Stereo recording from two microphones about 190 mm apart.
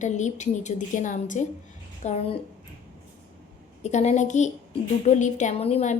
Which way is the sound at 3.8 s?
35° left (ahead or behind).